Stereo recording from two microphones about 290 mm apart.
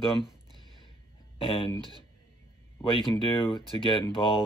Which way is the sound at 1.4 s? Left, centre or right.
Centre.